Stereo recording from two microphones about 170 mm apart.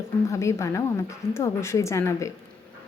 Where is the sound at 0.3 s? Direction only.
15° left (ahead or behind).